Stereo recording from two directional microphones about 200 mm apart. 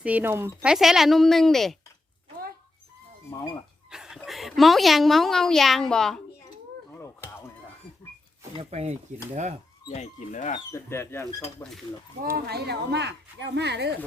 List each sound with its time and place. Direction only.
0.0 s a woman's voice: 10° right (ahead or behind)
3.9 s a woman's voice: centre (ahead or behind)
7.0 s chop: 15° left (ahead or behind)
8.5 s speech: 35° right (ahead or behind)
9.9 s speech: 35° left (ahead or behind)
10.7 s speech: 15° left (ahead or behind)
12.5 s a woman's voice: 55° right (ahead or behind)